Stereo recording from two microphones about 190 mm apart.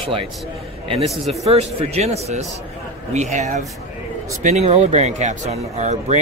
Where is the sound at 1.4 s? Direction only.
35° right (ahead or behind).